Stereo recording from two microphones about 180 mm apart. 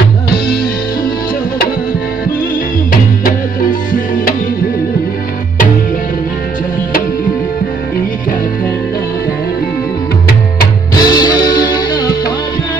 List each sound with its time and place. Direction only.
11.0 s music: 20° left (ahead or behind)